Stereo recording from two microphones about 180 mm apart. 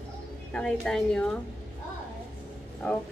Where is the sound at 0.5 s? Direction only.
5° left (ahead or behind).